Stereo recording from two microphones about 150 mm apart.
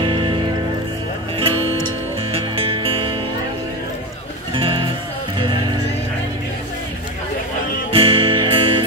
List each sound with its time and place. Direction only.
0.0 s music: 35° right (ahead or behind)
1.4 s music: 40° right (ahead or behind)
4.6 s music: 35° right (ahead or behind)
7.9 s music: 40° right (ahead or behind)